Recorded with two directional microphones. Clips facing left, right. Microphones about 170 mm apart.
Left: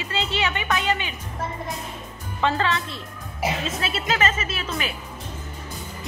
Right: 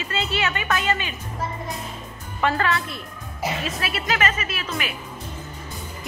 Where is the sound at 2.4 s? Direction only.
20° left (ahead or behind).